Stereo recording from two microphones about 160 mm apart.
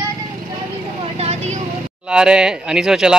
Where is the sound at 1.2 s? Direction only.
40° right (ahead or behind).